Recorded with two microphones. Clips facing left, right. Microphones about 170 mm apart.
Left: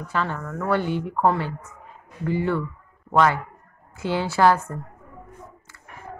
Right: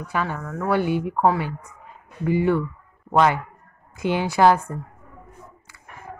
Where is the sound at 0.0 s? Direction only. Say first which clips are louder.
Even; 10° right (ahead or behind).